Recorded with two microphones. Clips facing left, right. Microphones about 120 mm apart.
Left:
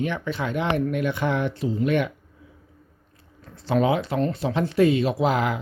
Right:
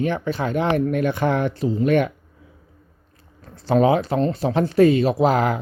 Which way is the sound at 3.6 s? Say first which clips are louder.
Right 4 dB; 40° right (ahead or behind).